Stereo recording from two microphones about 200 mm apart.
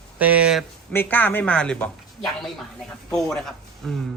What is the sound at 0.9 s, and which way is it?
Speech, 10° left (ahead or behind).